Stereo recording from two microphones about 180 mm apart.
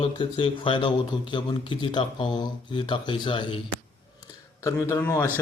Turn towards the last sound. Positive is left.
turn(degrees=10)  # may be behind; listen again after turning